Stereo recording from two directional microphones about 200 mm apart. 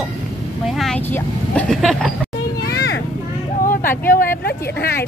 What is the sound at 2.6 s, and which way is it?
Children playing, 55° left (ahead or behind).